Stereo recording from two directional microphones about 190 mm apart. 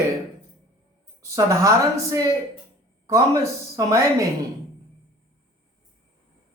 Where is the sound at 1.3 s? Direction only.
15° right (ahead or behind).